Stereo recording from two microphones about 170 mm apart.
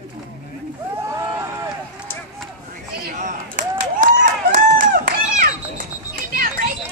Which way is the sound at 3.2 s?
45° right (ahead or behind).